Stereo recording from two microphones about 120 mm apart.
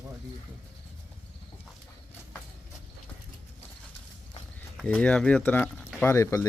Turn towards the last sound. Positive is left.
turn(degrees=25)  # may be behind; listen again after turning